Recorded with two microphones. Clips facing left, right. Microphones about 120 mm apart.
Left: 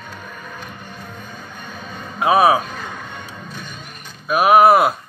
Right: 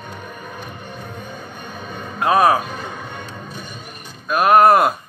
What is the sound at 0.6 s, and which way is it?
Music, 50° right (ahead or behind).